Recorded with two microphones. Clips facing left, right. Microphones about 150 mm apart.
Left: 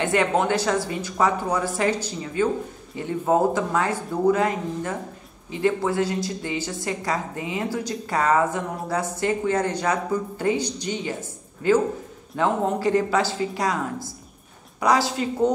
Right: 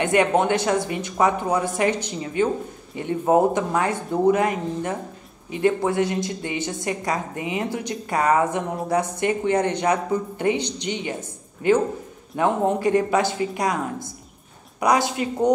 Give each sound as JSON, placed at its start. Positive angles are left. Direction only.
{"t": 0.0, "sound": "a woman's voice", "side_deg": -20}